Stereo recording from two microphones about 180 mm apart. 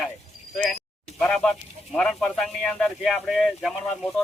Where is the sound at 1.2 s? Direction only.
5° left (ahead or behind).